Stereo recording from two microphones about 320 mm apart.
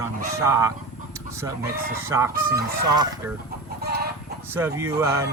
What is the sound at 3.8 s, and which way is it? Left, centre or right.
Chicken, right.